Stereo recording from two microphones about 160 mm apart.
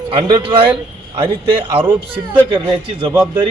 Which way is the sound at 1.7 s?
35° right (ahead or behind).